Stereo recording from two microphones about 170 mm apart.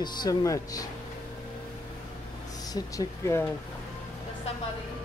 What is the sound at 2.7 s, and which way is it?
Speech, 20° left (ahead or behind).